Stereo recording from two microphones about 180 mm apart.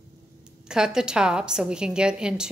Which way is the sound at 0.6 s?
5° right (ahead or behind).